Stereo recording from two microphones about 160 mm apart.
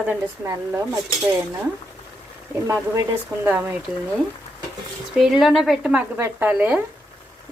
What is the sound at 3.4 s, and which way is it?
Speech, 15° right (ahead or behind).